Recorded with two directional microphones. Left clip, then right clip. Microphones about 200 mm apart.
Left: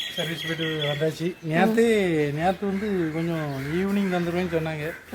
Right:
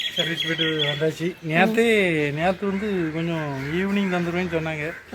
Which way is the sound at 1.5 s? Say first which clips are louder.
Right 2 dB; 15° right (ahead or behind).